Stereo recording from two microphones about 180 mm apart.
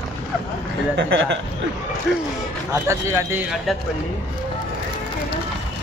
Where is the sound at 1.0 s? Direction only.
80° right.